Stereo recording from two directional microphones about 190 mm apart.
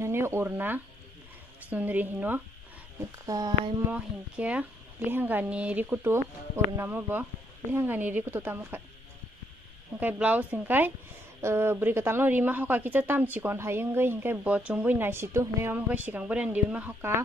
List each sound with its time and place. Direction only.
0.0 s a woman's voice: 15° right (ahead or behind)
3.9 s a woman's voice: 5° right (ahead or behind)
9.9 s a woman's voice: 10° right (ahead or behind)